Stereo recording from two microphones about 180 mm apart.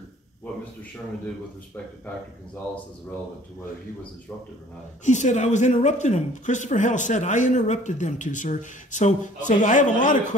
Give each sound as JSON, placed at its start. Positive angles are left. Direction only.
{"t": 5.0, "sound": "speech", "side_deg": 40}